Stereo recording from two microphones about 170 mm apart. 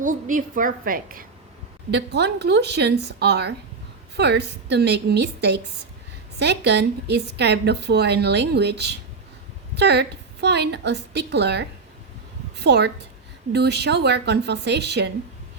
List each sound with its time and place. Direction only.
0.0 s a woman's voice: 50° right (ahead or behind)
1.9 s a woman's voice: 85° right